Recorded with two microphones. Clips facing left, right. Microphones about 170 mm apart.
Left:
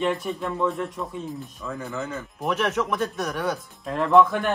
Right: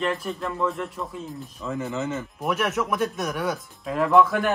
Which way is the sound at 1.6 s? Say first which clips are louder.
Right 5 dB; 20° right (ahead or behind).